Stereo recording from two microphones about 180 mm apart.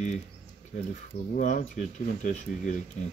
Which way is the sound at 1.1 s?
40° left (ahead or behind).